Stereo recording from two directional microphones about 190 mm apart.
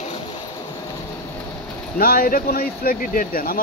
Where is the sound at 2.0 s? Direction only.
50° left (ahead or behind).